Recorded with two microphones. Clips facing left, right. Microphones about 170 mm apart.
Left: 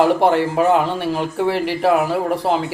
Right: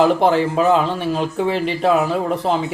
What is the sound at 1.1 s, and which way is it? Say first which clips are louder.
Speech: even; 15° left (ahead or behind).